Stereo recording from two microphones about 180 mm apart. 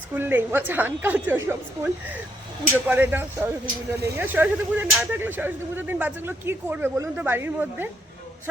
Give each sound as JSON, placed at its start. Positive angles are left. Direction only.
{"t": 0.1, "sound": "speech", "side_deg": -10}